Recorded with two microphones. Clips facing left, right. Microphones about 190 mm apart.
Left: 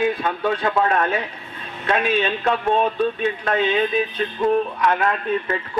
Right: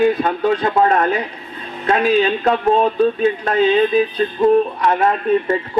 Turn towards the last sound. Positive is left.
turn(degrees=-30)  # may be behind; listen again after turning